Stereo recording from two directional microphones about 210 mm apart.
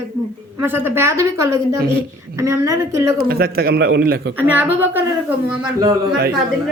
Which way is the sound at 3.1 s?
45° right (ahead or behind).